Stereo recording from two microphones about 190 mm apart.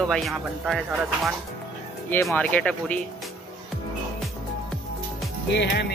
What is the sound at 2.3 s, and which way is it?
Speech, 5° left (ahead or behind).